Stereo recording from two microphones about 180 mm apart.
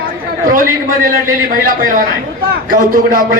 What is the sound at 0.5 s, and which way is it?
A man's voice, 50° right (ahead or behind).